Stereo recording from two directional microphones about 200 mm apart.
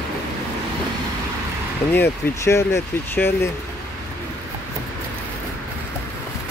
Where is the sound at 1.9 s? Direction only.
10° left (ahead or behind).